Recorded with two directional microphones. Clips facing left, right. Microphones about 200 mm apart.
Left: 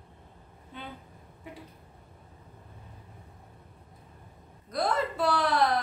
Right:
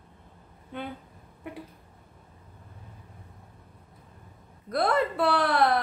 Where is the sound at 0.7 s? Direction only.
60° right (ahead or behind).